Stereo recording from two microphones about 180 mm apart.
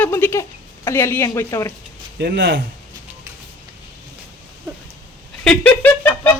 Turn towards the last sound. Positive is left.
turn(degrees=10)  # may be behind; listen again after turning